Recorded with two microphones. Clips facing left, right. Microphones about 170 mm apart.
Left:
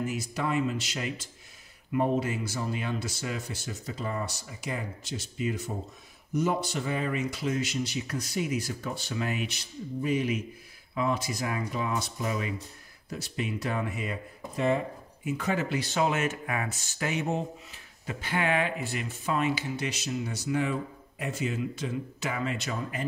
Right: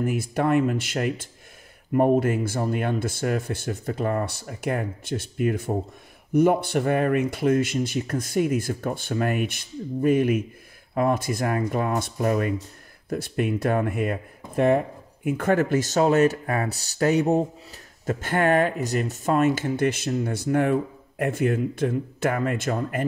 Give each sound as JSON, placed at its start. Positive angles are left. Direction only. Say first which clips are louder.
{"t": 0.0, "sound": "speech", "louder": "right 7 dB", "side_deg": -55}